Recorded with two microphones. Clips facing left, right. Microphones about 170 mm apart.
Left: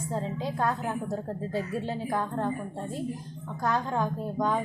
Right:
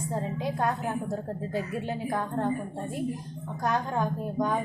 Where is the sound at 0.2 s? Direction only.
15° right (ahead or behind).